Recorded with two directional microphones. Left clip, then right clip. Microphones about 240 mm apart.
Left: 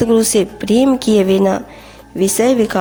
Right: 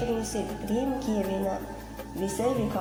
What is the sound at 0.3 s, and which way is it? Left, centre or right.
Speech, left.